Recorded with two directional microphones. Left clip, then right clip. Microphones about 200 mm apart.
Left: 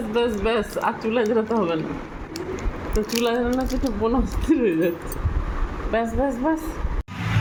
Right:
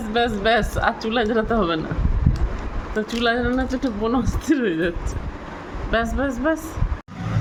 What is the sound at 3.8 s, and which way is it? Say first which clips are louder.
Speech: even; 25° right (ahead or behind).